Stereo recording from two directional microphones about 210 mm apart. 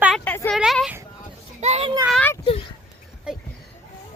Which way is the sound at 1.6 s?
30° right (ahead or behind).